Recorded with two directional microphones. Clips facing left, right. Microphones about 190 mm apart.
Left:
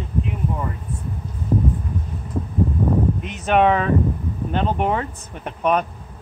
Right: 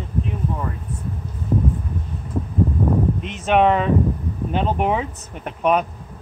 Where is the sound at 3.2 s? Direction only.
Centre (ahead or behind).